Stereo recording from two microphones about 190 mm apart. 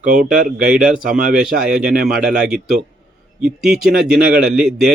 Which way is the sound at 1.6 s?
5° right (ahead or behind).